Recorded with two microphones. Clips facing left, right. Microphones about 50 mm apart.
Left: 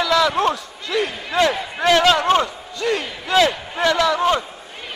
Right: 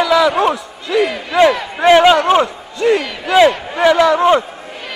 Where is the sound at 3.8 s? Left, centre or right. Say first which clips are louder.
Right 6 dB; right.